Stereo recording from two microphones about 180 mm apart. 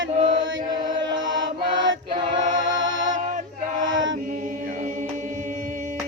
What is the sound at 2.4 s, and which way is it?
Music, 90° right.